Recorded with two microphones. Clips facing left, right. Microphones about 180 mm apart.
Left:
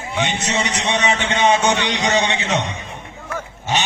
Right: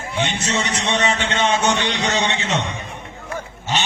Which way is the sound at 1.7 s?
15° left (ahead or behind).